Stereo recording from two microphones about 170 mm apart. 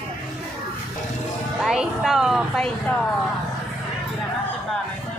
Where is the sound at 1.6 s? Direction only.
Centre (ahead or behind).